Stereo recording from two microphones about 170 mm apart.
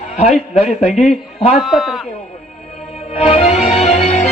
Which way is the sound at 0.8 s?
40° left (ahead or behind).